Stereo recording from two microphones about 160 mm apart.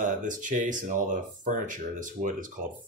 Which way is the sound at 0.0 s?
55° right (ahead or behind).